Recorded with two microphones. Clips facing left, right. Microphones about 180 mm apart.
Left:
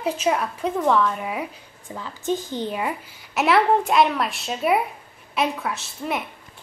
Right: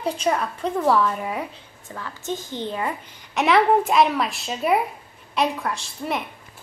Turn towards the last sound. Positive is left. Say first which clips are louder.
# even
turn(degrees=5)  # may be behind; listen again after turning